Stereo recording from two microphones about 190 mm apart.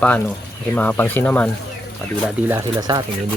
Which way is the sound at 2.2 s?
15° right (ahead or behind).